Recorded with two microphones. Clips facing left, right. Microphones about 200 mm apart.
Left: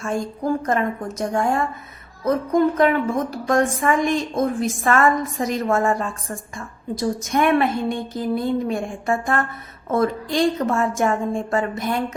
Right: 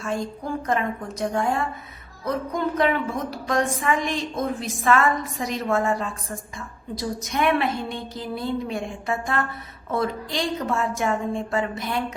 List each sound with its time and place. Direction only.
0.0 s a woman's voice: 45° left (ahead or behind)